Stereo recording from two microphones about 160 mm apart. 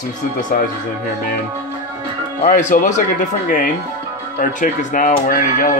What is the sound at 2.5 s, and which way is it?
Speech, 55° left (ahead or behind).